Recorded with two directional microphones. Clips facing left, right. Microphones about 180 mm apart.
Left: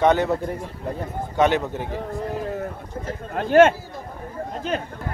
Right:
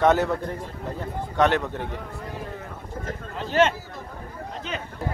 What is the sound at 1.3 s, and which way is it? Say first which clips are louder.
Speech: left 2 dB; 5° left (ahead or behind).